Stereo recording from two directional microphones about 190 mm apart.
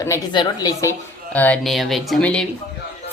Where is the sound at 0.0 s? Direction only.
15° left (ahead or behind).